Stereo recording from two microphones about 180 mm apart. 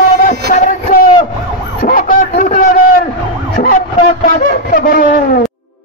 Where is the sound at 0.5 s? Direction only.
50° left (ahead or behind).